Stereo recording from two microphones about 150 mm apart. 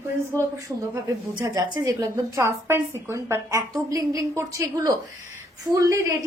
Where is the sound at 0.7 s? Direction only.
15° right (ahead or behind).